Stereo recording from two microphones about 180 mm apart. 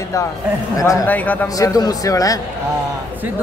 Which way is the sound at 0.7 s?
15° left (ahead or behind).